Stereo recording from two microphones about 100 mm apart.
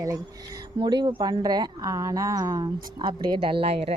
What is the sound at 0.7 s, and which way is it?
A woman's voice, 50° right (ahead or behind).